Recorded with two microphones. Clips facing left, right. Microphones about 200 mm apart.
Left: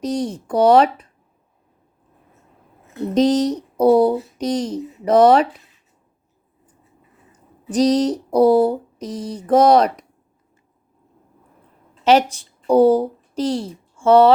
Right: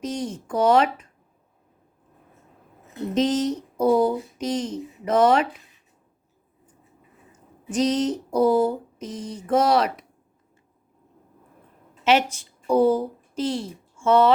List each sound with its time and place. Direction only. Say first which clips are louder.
0.0 s speech: left 6 dB; 35° left (ahead or behind)
3.2 s speech: left 6 dB; 35° left (ahead or behind)
7.7 s speech: left 6 dB; 35° left (ahead or behind)
12.0 s a woman's voice: left 5 dB; 35° left (ahead or behind)